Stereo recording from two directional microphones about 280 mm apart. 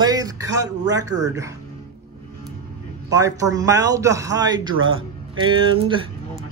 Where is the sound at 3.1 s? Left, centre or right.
Centre.